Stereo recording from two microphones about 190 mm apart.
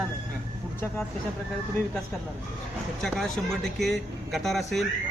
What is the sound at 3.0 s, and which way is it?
Speech, centre (ahead or behind).